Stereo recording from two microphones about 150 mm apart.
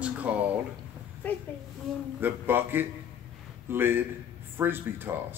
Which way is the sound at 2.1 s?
15° right (ahead or behind).